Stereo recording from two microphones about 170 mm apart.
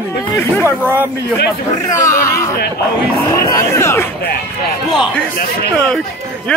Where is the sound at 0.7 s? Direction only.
10° right (ahead or behind).